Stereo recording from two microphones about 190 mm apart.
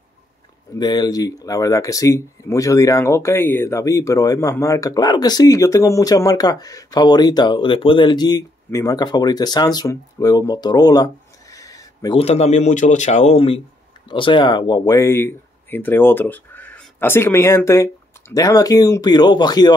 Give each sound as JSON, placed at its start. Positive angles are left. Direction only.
{"t": 0.7, "sound": "speech", "side_deg": 20}
{"t": 11.5, "sound": "a sound", "side_deg": 15}
{"t": 12.2, "sound": "speech", "side_deg": 35}